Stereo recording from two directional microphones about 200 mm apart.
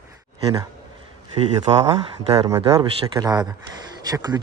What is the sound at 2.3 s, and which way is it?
Speech, 25° right (ahead or behind).